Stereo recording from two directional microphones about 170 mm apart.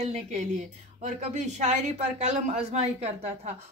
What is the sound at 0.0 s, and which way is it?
Speech, 40° right (ahead or behind).